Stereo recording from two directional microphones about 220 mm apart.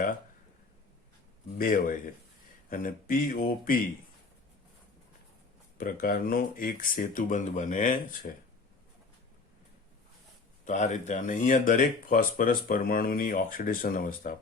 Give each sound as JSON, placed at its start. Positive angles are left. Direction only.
{"t": 1.5, "sound": "speech", "side_deg": 40}
{"t": 5.7, "sound": "speech", "side_deg": 40}
{"t": 10.7, "sound": "speech", "side_deg": 35}